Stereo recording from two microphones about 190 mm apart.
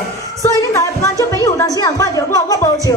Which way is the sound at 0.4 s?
15° left (ahead or behind).